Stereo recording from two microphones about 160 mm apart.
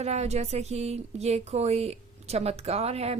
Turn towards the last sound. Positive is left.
turn(degrees=-40)  # may be behind; listen again after turning